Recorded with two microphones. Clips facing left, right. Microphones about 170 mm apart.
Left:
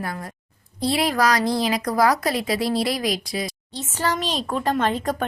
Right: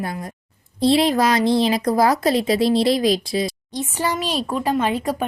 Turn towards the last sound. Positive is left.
turn(degrees=-10)  # may be behind; listen again after turning